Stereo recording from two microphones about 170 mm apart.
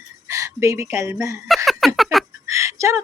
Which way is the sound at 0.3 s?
15° right (ahead or behind).